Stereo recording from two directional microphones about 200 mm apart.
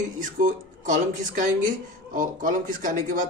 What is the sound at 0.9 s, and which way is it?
A man's voice, 40° right (ahead or behind).